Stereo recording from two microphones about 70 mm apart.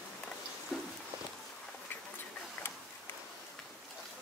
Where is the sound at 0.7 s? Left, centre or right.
Centre.